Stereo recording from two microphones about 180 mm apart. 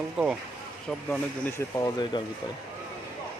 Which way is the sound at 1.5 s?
20° left (ahead or behind).